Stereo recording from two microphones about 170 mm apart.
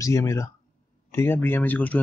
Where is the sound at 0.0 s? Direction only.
20° left (ahead or behind).